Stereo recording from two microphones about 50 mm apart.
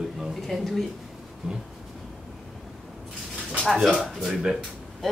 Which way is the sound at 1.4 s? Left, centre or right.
Centre.